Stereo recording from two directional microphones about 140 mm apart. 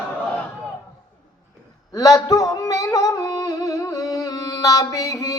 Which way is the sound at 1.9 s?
25° left (ahead or behind).